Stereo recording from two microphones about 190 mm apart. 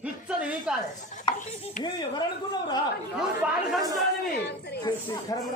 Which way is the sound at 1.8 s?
20° left (ahead or behind).